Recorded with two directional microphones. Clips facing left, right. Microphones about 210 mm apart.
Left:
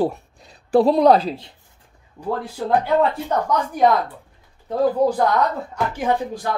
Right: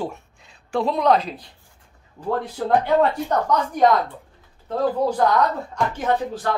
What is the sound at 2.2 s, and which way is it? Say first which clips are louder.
Speech: right 1 dB; 5° left (ahead or behind).